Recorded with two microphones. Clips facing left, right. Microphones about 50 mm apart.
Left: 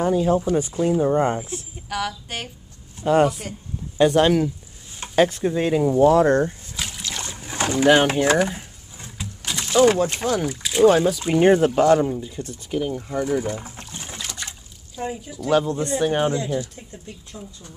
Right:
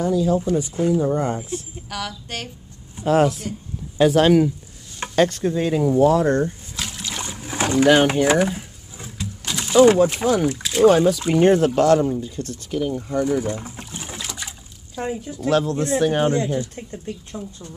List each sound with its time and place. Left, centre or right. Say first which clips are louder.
0.0 s speech: even; left
1.9 s speech: left 3 dB; centre
6.1 s speech: left 2 dB; left
6.7 s a sound: right 1 dB; centre
7.1 s boat: right 2 dB; centre
7.8 s speech: right 1 dB; centre
8.3 s a sound: right 1 dB; centre
9.2 s speech: right 1 dB; centre
15.5 s speech: even; centre
16.3 s speech: right 3 dB; right